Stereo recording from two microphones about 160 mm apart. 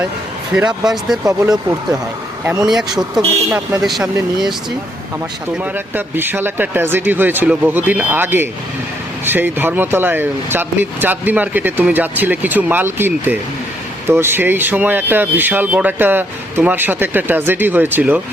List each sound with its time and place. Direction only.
0.5 s speech: 5° right (ahead or behind)
1.2 s speech: 20° right (ahead or behind)
2.6 s speech: centre (ahead or behind)
5.7 s speech: 10° right (ahead or behind)